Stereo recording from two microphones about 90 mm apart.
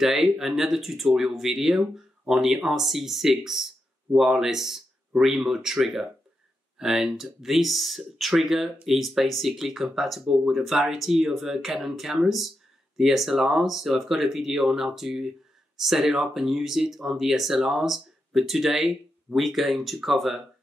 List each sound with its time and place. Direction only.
0.0 s speech: 5° right (ahead or behind)